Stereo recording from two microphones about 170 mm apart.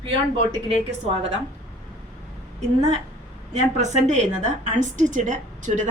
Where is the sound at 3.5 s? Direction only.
45° right (ahead or behind).